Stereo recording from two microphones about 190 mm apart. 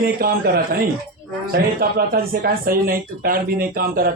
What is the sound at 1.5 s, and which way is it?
Speech, 55° right (ahead or behind).